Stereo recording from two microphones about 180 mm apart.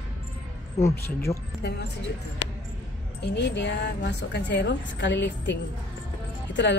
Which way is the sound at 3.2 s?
75° left (ahead or behind).